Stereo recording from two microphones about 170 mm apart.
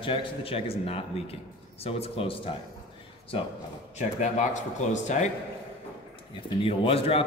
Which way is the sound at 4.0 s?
45° left (ahead or behind).